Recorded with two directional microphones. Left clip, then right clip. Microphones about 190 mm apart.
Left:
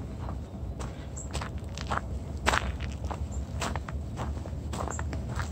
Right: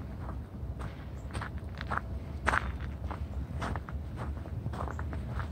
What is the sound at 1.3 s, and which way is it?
Walk, centre (ahead or behind).